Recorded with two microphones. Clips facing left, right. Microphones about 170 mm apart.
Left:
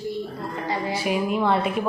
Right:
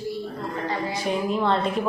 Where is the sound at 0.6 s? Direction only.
10° left (ahead or behind).